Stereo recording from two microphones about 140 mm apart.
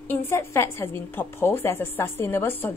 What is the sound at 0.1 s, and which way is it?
A woman's voice, 15° left (ahead or behind).